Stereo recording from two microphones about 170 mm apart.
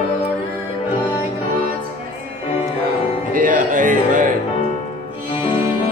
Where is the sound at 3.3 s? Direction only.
55° right (ahead or behind).